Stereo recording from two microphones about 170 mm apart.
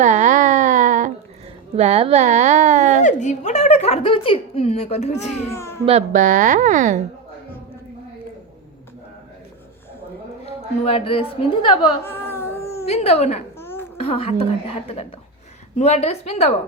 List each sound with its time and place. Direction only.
0.0 s a sound: 45° right (ahead or behind)
1.7 s speech: 35° right (ahead or behind)
3.0 s speech: 45° left (ahead or behind)
5.5 s speech: 15° left (ahead or behind)
5.8 s speech: 40° right (ahead or behind)
10.4 s speech: 35° left (ahead or behind)
12.0 s cat: 15° left (ahead or behind)
12.8 s speech: 35° left (ahead or behind)
13.6 s babbling: 15° left (ahead or behind)
14.0 s speech: 35° left (ahead or behind)